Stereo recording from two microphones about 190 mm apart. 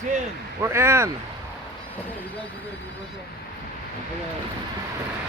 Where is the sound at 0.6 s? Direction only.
15° right (ahead or behind).